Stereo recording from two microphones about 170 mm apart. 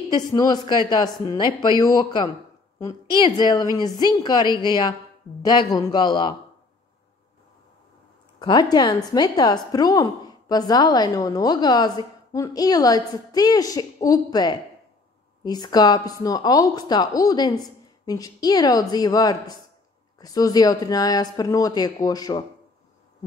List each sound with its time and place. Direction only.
0.1 s a woman's voice: 20° left (ahead or behind)
8.4 s a woman's voice: 25° left (ahead or behind)